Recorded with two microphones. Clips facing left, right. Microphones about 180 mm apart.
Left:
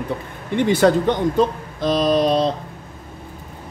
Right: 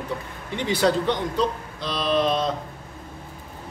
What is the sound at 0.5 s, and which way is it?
Speech, 50° left (ahead or behind).